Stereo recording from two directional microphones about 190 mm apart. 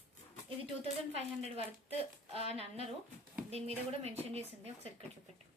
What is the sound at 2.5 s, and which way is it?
Speech, 30° right (ahead or behind).